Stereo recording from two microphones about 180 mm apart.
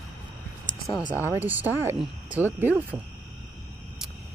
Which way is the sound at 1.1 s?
10° right (ahead or behind).